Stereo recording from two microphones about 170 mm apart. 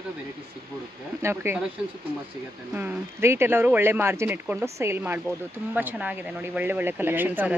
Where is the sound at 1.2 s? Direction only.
15° right (ahead or behind).